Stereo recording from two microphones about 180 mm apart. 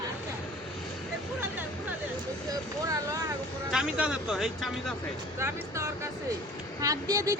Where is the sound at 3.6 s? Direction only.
5° right (ahead or behind).